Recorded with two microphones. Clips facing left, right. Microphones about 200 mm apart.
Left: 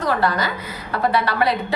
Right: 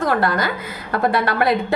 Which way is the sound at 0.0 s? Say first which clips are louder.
Right 2 dB; 50° right (ahead or behind).